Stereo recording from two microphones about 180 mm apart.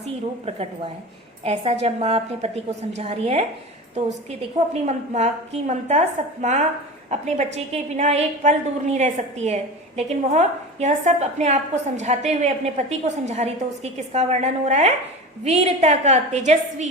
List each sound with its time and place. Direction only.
1.5 s a woman's voice: 35° right (ahead or behind)